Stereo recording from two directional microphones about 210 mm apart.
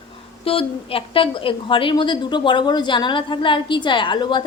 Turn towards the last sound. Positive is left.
turn(degrees=20)  # may be behind; listen again after turning